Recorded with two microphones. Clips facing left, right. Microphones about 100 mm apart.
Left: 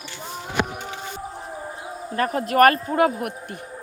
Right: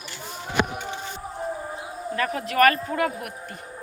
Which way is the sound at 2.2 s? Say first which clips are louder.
Left 4 dB; 45° left (ahead or behind).